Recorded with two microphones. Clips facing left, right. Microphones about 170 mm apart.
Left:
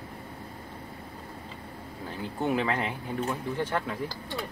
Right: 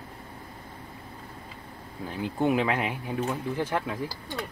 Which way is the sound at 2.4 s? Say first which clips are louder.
Right 2 dB; 15° right (ahead or behind).